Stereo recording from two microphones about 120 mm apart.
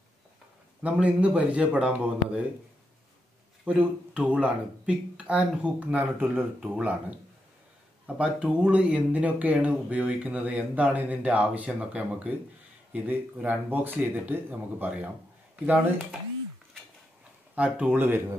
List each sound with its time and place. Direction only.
0.8 s speech: 10° right (ahead or behind)
3.6 s speech: 10° right (ahead or behind)
8.2 s speech: 10° right (ahead or behind)
17.6 s speech: 10° right (ahead or behind)